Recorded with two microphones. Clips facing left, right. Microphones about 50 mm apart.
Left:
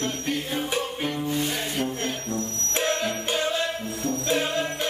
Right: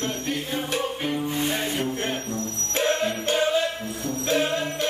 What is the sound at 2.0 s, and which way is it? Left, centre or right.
Music, right.